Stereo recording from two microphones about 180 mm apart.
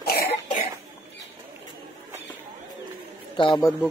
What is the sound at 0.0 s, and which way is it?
Cough, 60° left (ahead or behind).